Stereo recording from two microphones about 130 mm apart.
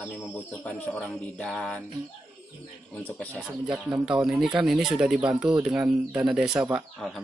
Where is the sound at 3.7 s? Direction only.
10° right (ahead or behind).